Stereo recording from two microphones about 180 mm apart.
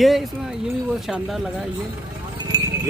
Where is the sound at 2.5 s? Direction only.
20° right (ahead or behind).